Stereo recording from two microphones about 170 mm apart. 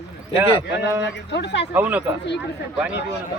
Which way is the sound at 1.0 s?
90° left.